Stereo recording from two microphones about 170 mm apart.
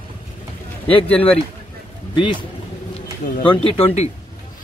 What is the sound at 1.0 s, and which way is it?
Speech, 10° left (ahead or behind).